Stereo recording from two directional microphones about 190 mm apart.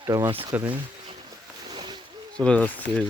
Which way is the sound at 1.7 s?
25° right (ahead or behind).